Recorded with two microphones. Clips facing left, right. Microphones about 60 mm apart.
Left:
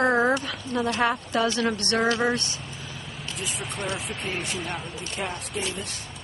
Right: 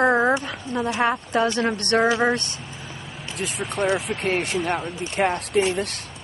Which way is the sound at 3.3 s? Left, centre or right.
Right.